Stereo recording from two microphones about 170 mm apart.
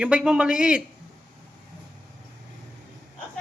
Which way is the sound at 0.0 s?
5° right (ahead or behind).